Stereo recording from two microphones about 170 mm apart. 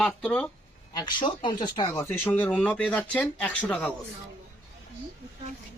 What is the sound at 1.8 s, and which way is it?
Speech, 15° left (ahead or behind).